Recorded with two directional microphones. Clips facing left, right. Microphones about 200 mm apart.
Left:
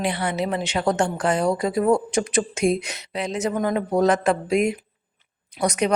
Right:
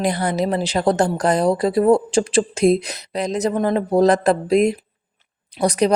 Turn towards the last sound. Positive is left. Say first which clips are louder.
# right 4 dB
turn(degrees=-35)  # may be behind; listen again after turning